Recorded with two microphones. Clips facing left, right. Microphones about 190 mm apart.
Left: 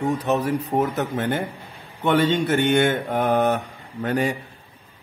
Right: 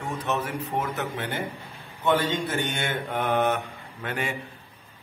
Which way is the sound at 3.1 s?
40° left (ahead or behind).